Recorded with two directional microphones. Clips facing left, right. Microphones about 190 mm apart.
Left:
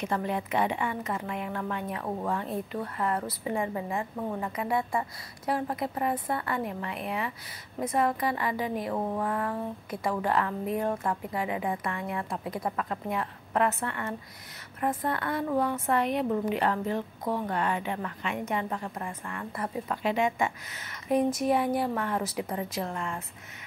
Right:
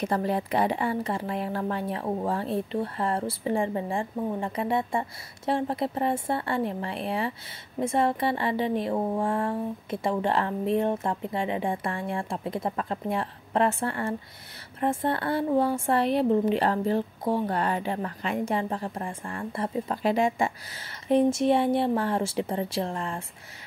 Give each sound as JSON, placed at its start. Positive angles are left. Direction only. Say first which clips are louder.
{"t": 0.0, "sound": "a woman's voice", "louder": "right 4 dB", "side_deg": -35}